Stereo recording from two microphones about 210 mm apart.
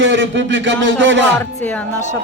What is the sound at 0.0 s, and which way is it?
A man's voice, 60° right (ahead or behind).